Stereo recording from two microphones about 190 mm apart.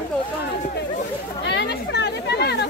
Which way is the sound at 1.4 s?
65° left (ahead or behind).